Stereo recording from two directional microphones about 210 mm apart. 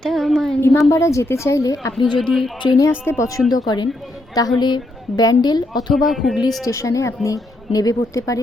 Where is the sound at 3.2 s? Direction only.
15° left (ahead or behind).